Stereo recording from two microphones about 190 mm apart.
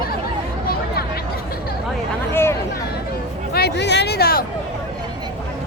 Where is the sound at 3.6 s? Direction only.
60° left (ahead or behind).